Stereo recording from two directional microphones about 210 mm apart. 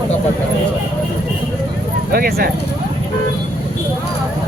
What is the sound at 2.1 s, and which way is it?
Speech, 45° right (ahead or behind).